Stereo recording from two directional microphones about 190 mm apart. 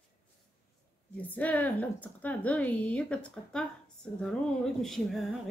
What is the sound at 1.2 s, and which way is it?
Speech, 10° left (ahead or behind).